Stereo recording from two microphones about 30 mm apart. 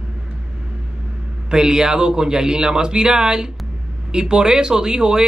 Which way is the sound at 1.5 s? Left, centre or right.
Right.